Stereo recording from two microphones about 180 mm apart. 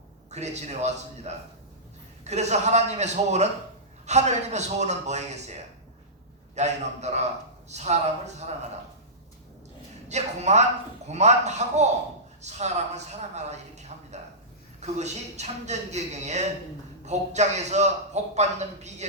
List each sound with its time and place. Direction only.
0.3 s a man's voice: 40° right (ahead or behind)
6.6 s a man's voice: 40° right (ahead or behind)
10.1 s a man's voice: 40° right (ahead or behind)